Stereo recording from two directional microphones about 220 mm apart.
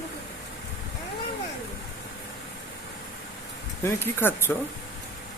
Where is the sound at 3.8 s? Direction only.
10° left (ahead or behind).